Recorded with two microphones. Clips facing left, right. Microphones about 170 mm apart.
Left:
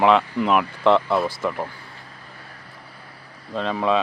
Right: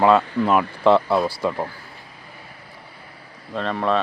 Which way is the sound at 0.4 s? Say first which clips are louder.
Right 1 dB; 10° right (ahead or behind).